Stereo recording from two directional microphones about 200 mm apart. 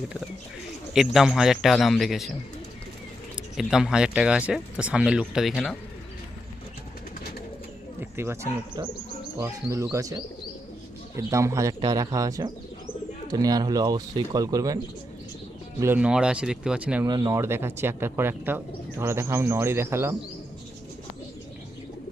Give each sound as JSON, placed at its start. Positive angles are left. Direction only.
{"t": 0.9, "sound": "speech", "side_deg": 0}
{"t": 3.6, "sound": "speech", "side_deg": -5}
{"t": 8.1, "sound": "speech", "side_deg": -10}
{"t": 11.2, "sound": "speech", "side_deg": -15}
{"t": 15.8, "sound": "speech", "side_deg": -10}
{"t": 17.1, "sound": "speech", "side_deg": -20}